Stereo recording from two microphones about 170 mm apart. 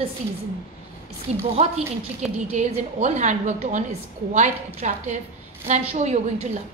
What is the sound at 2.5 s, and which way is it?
A woman's voice, 40° right (ahead or behind).